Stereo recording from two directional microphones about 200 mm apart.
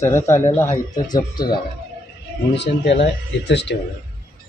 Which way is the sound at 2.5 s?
60° left (ahead or behind).